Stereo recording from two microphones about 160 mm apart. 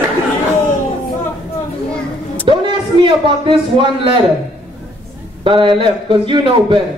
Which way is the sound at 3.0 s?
30° right (ahead or behind).